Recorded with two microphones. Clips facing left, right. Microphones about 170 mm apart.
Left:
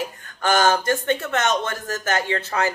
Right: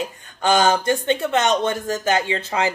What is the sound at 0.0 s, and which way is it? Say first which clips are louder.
Speech: right 2 dB; 15° right (ahead or behind).